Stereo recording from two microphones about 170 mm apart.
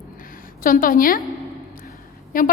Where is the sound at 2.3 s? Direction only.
55° left (ahead or behind).